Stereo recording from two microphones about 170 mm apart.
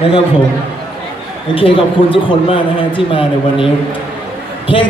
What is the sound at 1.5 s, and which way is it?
A man's voice, 30° left (ahead or behind).